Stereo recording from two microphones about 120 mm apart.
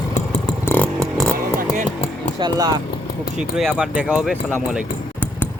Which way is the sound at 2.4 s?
35° right (ahead or behind).